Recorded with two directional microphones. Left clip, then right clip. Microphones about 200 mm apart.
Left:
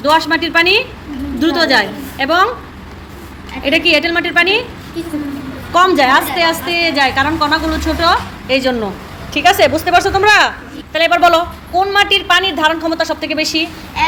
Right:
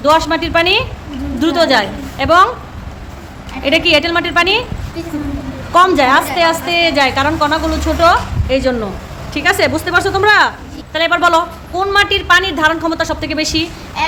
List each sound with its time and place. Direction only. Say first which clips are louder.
0.0 s a woman's voice: even; 15° right (ahead or behind)
3.6 s a woman's voice: even; 15° right (ahead or behind)
5.7 s a woman's voice: right 1 dB; 10° right (ahead or behind)